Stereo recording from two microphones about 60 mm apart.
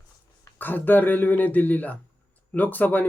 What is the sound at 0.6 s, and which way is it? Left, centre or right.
Speech, left.